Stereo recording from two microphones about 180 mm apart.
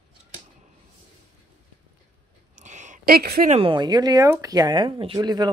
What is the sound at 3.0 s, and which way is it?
Speech, 60° right (ahead or behind).